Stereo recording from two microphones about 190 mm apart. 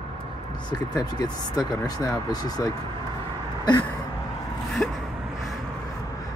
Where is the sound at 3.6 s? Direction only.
20° left (ahead or behind).